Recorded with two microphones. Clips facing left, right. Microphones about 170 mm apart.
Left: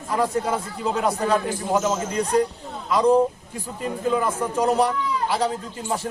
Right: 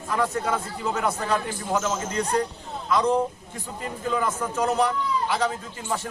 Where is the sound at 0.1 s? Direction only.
30° left (ahead or behind).